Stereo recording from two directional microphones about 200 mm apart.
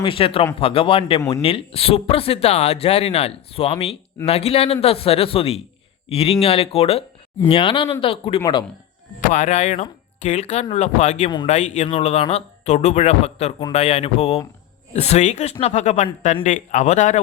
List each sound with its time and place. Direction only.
0.0 s speech: 25° left (ahead or behind)
9.3 s speech: 35° left (ahead or behind)